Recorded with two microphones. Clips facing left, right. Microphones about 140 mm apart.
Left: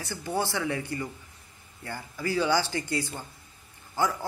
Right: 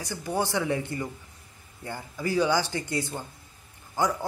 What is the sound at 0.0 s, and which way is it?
A man's voice, 15° right (ahead or behind).